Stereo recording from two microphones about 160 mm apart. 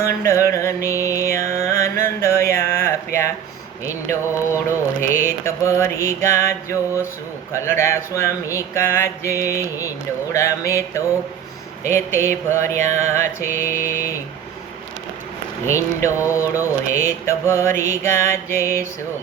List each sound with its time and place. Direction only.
0.0 s mantra: 20° left (ahead or behind)
15.6 s mantra: 20° left (ahead or behind)
16.2 s speech: 20° left (ahead or behind)
16.9 s mantra: 15° left (ahead or behind)